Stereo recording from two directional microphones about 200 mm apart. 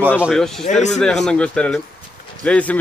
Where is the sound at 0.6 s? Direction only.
35° left (ahead or behind).